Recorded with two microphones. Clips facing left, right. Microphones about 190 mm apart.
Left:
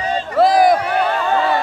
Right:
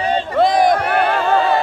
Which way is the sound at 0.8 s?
60° right (ahead or behind).